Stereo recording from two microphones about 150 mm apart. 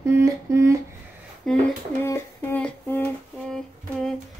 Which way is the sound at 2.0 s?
15° left (ahead or behind).